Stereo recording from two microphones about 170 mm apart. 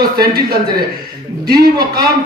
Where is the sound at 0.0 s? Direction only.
65° right (ahead or behind).